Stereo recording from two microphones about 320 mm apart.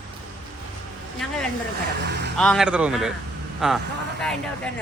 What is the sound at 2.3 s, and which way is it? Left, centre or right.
Speech, centre.